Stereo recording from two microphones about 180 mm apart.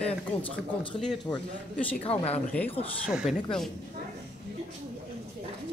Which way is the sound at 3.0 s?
5° right (ahead or behind).